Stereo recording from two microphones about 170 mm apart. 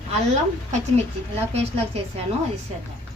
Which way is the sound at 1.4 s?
40° right (ahead or behind).